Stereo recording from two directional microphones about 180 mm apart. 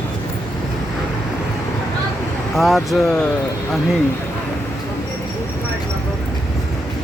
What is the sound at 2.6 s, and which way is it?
Speech, centre (ahead or behind).